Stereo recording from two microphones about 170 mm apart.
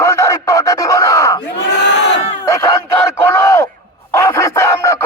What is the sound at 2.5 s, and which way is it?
Battle cry, 20° left (ahead or behind).